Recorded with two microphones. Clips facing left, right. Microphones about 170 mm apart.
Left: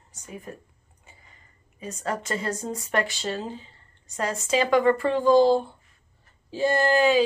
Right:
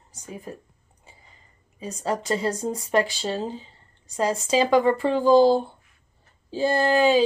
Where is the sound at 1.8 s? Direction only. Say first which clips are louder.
Right 3 dB; 30° right (ahead or behind).